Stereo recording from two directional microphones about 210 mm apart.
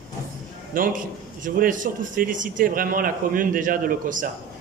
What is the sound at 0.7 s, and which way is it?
A man's voice, 40° right (ahead or behind).